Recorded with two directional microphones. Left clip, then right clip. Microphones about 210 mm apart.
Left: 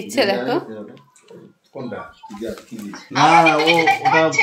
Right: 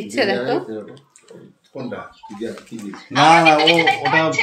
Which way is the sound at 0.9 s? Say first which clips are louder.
Right 1 dB; 15° right (ahead or behind).